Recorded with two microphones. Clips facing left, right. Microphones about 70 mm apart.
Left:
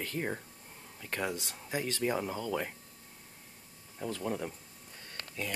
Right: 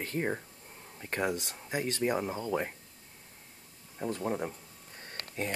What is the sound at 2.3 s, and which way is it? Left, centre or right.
Speech, right.